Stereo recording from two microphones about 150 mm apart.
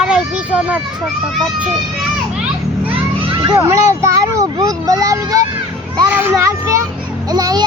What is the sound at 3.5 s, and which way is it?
A child's voice, 20° right (ahead or behind).